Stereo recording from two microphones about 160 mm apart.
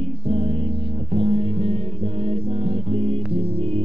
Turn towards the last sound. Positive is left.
turn(degrees=-35)  # may be behind; listen again after turning